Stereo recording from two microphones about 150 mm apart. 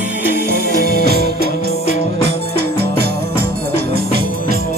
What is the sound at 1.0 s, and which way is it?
Music, 90° right.